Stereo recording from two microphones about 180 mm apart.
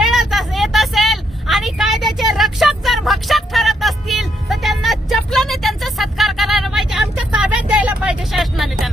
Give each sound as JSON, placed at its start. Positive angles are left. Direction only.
{"t": 0.0, "sound": "vehicle", "side_deg": 0}